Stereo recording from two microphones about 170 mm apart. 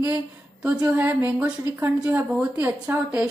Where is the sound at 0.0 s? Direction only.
10° right (ahead or behind).